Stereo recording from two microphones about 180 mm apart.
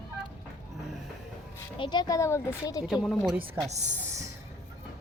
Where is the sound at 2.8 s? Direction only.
Centre (ahead or behind).